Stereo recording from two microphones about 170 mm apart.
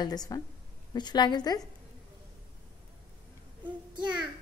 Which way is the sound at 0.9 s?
25° left (ahead or behind).